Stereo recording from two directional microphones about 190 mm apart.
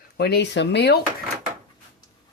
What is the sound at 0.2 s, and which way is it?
Speech, 60° left (ahead or behind).